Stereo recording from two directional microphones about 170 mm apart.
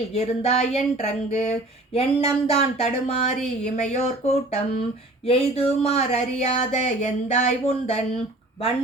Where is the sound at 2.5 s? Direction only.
40° left (ahead or behind).